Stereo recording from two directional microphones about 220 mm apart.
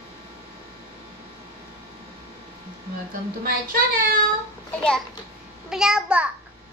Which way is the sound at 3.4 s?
40° right (ahead or behind).